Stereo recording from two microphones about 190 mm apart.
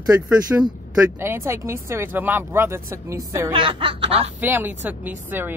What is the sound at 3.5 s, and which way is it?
Speech, 30° right (ahead or behind).